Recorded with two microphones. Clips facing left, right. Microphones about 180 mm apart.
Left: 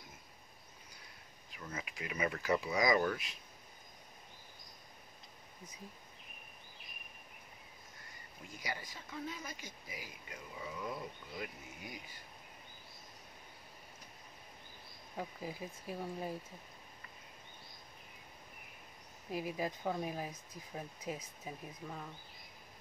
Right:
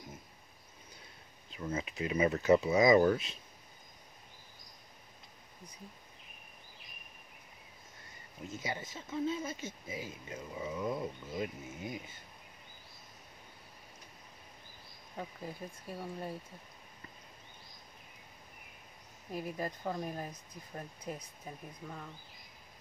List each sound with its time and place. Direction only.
1.5 s speech: 25° right (ahead or behind)
8.5 s speech: 25° right (ahead or behind)
15.1 s speech: 5° left (ahead or behind)
19.3 s speech: 5° left (ahead or behind)